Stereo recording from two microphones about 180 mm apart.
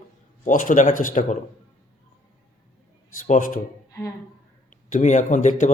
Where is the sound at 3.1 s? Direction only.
45° left (ahead or behind).